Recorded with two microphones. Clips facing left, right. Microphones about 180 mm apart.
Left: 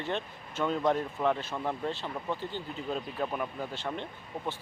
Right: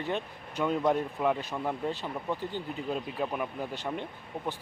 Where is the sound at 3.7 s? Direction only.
15° right (ahead or behind).